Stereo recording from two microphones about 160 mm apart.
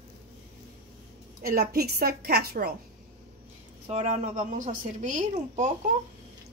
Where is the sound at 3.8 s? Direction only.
45° right (ahead or behind).